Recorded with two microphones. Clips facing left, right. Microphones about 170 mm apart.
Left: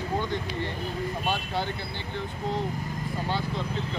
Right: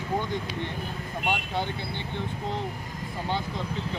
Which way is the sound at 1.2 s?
20° right (ahead or behind).